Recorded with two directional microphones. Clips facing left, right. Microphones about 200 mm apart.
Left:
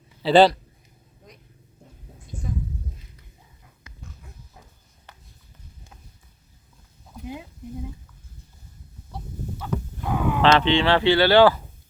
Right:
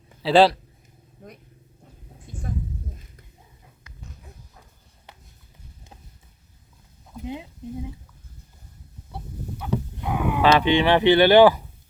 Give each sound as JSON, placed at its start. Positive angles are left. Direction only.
{"t": 0.2, "sound": "speech", "side_deg": 0}
{"t": 2.3, "sound": "a sound", "side_deg": -55}
{"t": 9.6, "sound": "livestock", "side_deg": -15}